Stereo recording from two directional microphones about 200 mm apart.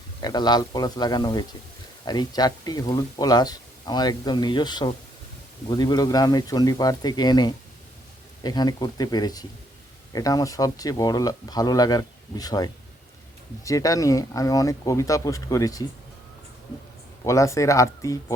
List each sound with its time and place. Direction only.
0.2 s speech: 20° left (ahead or behind)
17.2 s speech: 15° left (ahead or behind)